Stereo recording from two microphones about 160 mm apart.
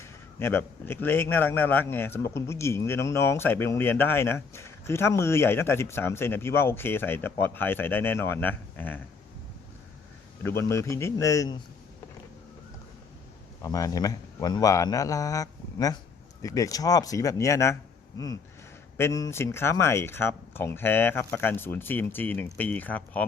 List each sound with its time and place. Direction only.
0.0 s a man's voice: 15° left (ahead or behind)
10.4 s a man's voice: 15° left (ahead or behind)
13.6 s a man's voice: 20° left (ahead or behind)
18.9 s a man's voice: 20° left (ahead or behind)